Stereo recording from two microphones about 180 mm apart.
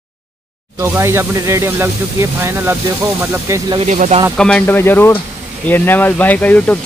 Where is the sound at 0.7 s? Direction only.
15° right (ahead or behind).